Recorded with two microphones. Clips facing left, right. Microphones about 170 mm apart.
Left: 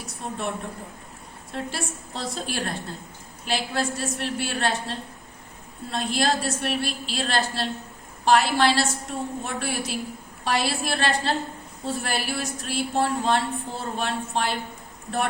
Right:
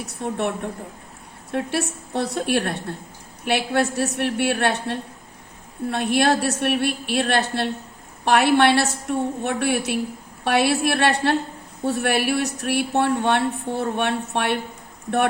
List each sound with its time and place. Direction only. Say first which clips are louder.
0.2 s speech: right 7 dB; 65° right (ahead or behind)
1.5 s speech: right 7 dB; 60° right (ahead or behind)